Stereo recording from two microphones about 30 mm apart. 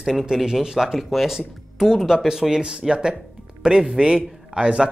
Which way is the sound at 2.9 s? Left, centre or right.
Right.